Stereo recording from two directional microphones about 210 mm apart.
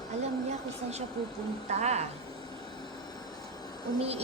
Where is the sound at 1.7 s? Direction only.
35° right (ahead or behind).